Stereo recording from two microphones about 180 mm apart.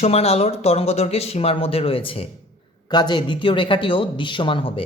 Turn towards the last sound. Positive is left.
turn(degrees=30)  # may be behind; listen again after turning